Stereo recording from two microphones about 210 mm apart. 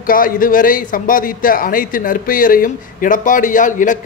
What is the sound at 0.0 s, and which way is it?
A man's voice, 40° left (ahead or behind).